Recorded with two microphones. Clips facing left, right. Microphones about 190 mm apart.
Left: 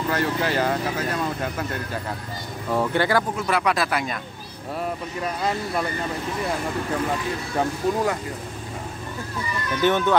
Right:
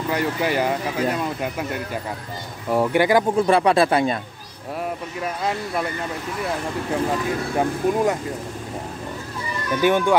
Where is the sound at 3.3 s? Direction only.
30° right (ahead or behind).